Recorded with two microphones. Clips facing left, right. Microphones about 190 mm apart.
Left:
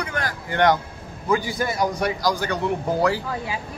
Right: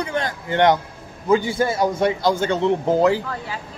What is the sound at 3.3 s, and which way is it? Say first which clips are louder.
Speech: left 1 dB; 10° left (ahead or behind).